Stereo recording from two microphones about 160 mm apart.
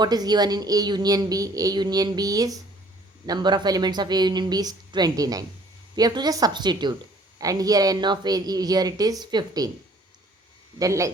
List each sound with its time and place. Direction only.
0.0 s a woman's voice: 25° right (ahead or behind)
10.8 s a woman's voice: 20° right (ahead or behind)